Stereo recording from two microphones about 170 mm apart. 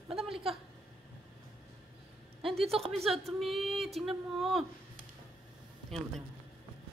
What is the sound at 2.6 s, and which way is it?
Speech, 35° right (ahead or behind).